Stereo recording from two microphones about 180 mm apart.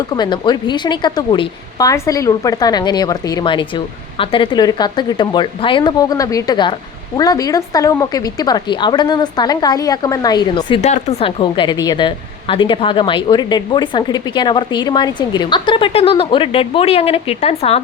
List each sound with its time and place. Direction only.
0.0 s a woman's voice: 25° left (ahead or behind)